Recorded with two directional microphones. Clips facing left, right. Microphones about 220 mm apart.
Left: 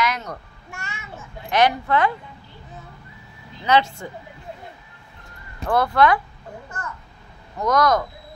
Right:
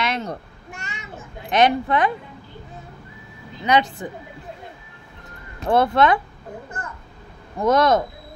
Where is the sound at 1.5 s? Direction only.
20° right (ahead or behind).